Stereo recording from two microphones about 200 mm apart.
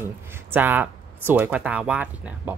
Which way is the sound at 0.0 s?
10° right (ahead or behind).